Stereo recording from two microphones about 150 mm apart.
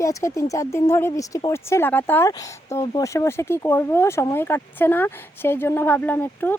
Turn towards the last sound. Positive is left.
turn(degrees=15)  # may be behind; listen again after turning